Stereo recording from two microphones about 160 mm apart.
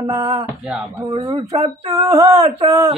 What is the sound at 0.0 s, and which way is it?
Speech, 35° right (ahead or behind).